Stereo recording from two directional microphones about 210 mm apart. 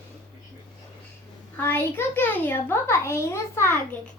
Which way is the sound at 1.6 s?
10° left (ahead or behind).